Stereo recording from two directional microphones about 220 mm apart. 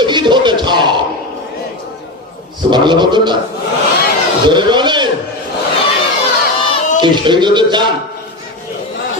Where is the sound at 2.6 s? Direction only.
20° right (ahead or behind).